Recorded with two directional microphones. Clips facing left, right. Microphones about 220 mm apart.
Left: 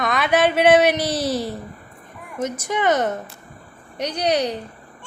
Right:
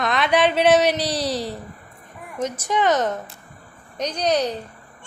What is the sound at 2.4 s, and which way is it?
Speech, 10° left (ahead or behind).